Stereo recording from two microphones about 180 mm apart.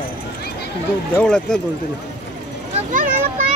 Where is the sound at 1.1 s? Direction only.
5° left (ahead or behind).